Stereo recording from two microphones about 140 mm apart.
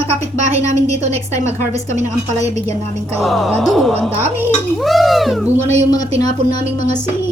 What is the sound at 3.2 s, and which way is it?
Music, centre (ahead or behind).